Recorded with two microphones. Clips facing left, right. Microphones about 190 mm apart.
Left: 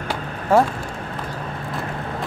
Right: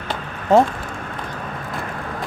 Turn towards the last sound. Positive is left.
turn(degrees=-20)  # may be behind; listen again after turning